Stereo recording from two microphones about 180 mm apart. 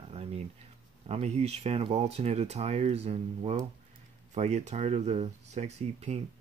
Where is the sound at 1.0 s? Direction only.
35° right (ahead or behind).